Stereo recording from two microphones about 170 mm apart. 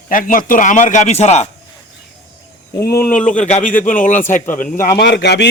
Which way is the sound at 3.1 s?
45° left (ahead or behind).